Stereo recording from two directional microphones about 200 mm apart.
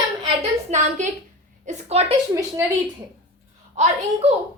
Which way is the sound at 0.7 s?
35° right (ahead or behind).